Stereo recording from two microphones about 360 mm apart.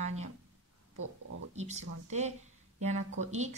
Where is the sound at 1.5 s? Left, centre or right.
Centre.